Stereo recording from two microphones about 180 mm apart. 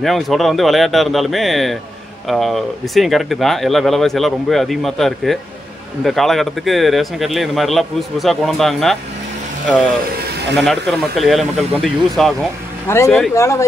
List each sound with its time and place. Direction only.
0.0 s speech: centre (ahead or behind)
10.5 s speech: centre (ahead or behind)
12.8 s speech: 15° left (ahead or behind)